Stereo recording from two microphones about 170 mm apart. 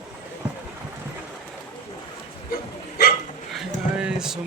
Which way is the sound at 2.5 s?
60° left (ahead or behind).